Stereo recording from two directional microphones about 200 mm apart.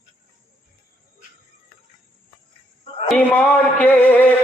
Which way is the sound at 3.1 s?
5° left (ahead or behind).